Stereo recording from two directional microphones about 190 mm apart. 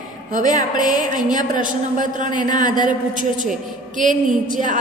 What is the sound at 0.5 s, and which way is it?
A woman's voice, 45° right (ahead or behind).